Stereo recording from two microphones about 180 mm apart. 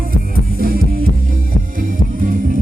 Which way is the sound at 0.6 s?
55° right (ahead or behind).